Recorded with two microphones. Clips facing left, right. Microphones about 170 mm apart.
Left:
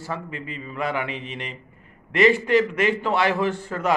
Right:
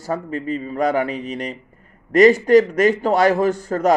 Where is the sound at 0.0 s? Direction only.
40° right (ahead or behind).